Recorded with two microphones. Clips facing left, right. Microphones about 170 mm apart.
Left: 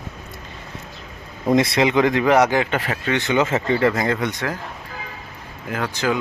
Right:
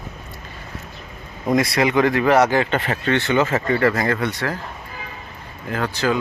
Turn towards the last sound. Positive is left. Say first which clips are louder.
# right 1 dB
turn(degrees=15)  # may be behind; listen again after turning